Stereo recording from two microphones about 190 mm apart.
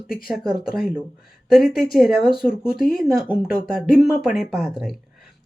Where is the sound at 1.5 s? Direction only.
Centre (ahead or behind).